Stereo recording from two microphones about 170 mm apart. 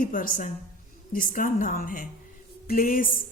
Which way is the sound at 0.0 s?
55° left (ahead or behind).